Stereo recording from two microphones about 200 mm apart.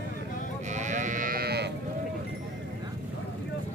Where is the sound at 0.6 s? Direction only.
35° right (ahead or behind); by 1.7 s 55° right (ahead or behind).